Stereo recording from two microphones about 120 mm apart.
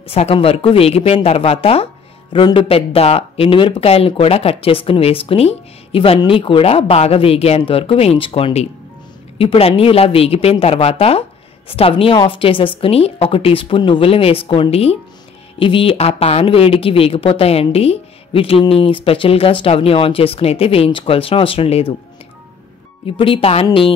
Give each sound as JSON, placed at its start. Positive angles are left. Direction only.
{"t": 0.1, "sound": "speech", "side_deg": 55}
{"t": 2.3, "sound": "a woman's voice", "side_deg": 45}
{"t": 23.0, "sound": "a woman's voice", "side_deg": 45}